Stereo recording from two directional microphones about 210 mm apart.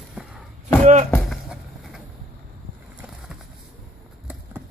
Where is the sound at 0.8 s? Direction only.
35° right (ahead or behind).